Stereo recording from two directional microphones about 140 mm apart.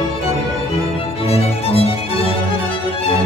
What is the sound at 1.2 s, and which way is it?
Music, 45° left (ahead or behind).